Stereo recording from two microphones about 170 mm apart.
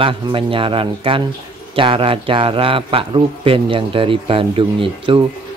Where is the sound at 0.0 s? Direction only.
30° right (ahead or behind).